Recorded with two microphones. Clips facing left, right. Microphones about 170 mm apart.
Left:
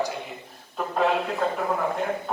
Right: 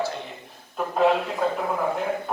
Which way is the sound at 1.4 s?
5° right (ahead or behind).